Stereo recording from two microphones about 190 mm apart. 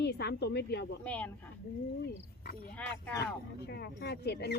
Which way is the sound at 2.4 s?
50° left (ahead or behind).